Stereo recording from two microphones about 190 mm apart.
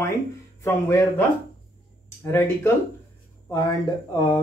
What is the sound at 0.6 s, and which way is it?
Speech, 15° left (ahead or behind).